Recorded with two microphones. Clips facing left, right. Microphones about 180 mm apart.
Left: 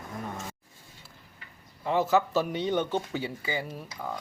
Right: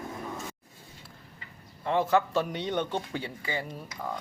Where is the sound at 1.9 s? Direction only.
5° left (ahead or behind).